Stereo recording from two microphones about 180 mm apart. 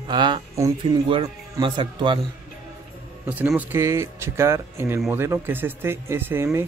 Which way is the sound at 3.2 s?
10° right (ahead or behind).